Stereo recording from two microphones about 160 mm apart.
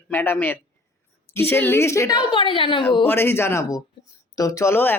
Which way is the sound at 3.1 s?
15° left (ahead or behind).